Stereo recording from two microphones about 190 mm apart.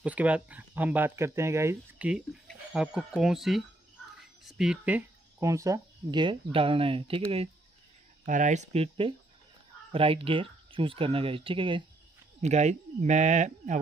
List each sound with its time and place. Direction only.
0.0 s speech: 5° right (ahead or behind); by 7.4 s 30° right (ahead or behind)
8.3 s speech: 40° right (ahead or behind)